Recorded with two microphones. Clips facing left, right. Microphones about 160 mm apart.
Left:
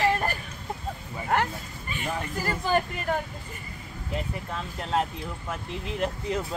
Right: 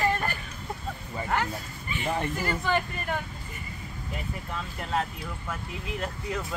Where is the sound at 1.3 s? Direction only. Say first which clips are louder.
Left 4 dB; 50° left (ahead or behind).